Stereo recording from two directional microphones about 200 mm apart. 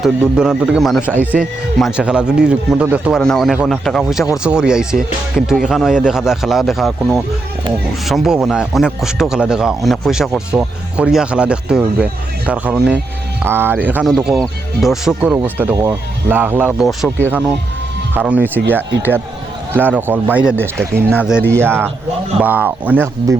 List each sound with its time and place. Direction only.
0.0 s speech: 5° right (ahead or behind)